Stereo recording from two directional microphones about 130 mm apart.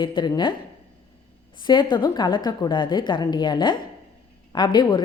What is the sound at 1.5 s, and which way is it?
A woman's voice, 35° left (ahead or behind).